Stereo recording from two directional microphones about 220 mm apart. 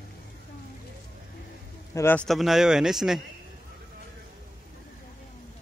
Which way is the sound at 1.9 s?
10° left (ahead or behind).